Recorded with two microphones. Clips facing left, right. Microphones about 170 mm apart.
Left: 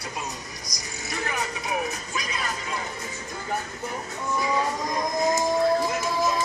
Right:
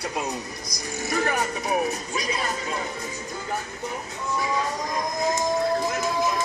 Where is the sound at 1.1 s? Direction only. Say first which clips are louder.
Right 5 dB; 50° right (ahead or behind).